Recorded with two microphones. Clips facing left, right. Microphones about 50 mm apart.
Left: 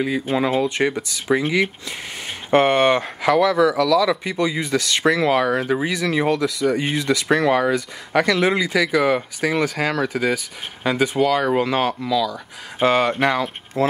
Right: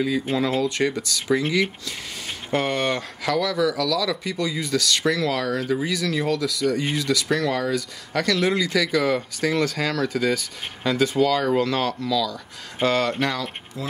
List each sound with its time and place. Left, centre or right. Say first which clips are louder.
0.3 s speech: left 3 dB; left
13.8 s speech: left 12 dB; left